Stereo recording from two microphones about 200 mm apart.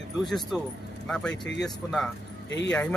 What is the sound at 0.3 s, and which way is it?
Speech, centre (ahead or behind).